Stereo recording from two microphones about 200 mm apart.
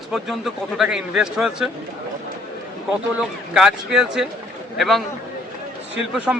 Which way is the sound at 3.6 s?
5° right (ahead or behind).